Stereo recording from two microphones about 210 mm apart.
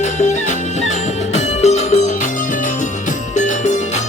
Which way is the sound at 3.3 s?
35° left (ahead or behind).